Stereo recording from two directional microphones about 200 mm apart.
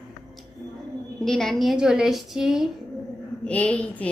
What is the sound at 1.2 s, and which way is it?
A woman's voice, centre (ahead or behind).